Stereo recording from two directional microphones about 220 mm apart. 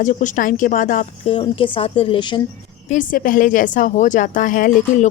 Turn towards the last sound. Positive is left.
turn(degrees=35)  # may be behind; listen again after turning